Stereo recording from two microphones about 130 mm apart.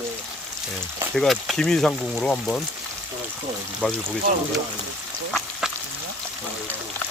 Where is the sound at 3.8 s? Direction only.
5° left (ahead or behind).